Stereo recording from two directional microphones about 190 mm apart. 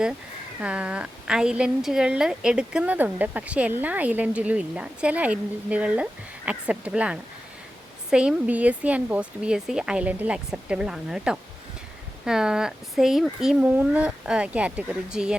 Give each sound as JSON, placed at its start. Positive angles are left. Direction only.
{"t": 0.6, "sound": "a woman's voice", "side_deg": -5}